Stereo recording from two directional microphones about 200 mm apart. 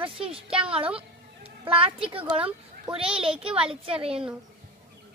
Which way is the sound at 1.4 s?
30° right (ahead or behind).